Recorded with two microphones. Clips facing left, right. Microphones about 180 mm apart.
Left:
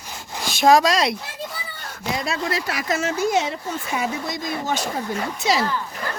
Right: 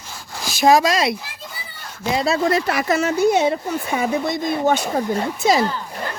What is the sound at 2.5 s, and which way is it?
A woman's voice, 55° right (ahead or behind).